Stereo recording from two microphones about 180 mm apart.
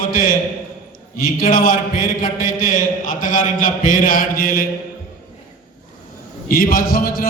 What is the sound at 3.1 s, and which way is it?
Mantra, 45° left (ahead or behind).